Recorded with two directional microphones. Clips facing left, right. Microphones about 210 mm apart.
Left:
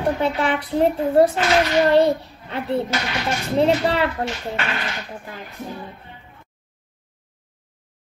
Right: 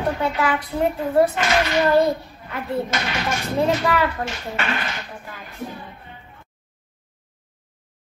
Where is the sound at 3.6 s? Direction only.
30° left (ahead or behind).